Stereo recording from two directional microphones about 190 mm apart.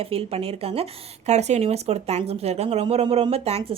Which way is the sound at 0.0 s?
30° right (ahead or behind).